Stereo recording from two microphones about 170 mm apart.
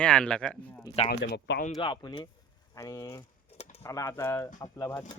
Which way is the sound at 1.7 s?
25° left (ahead or behind).